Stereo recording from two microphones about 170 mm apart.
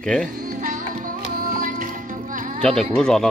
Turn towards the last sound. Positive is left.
turn(degrees=5)  # may be behind; listen again after turning